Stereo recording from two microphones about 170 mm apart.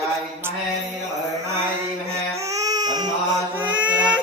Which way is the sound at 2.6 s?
25° right (ahead or behind).